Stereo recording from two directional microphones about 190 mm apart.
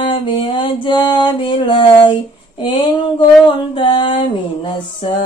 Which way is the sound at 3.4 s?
25° left (ahead or behind).